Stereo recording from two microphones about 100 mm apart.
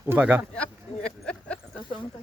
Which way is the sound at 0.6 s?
10° left (ahead or behind).